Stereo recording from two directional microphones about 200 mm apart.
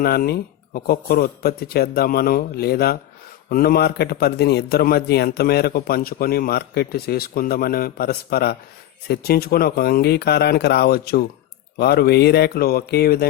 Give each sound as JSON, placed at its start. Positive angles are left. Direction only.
{"t": 0.0, "sound": "a man's voice", "side_deg": 50}